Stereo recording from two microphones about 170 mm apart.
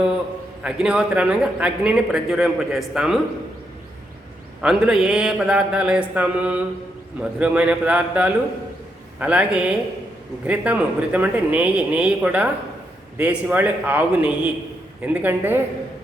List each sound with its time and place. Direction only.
0.6 s a man's voice: 5° right (ahead or behind)
4.6 s a man's voice: 5° right (ahead or behind)